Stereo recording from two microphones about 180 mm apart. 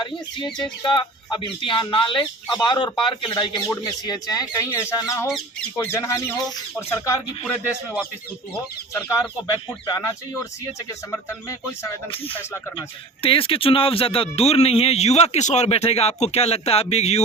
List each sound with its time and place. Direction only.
0.8 s speech: 25° left (ahead or behind)
10.8 s speech: 15° left (ahead or behind)
13.2 s a man's voice: 30° left (ahead or behind)